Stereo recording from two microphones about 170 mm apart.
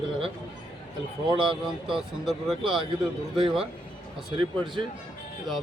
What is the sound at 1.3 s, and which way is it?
Speech, 30° right (ahead or behind).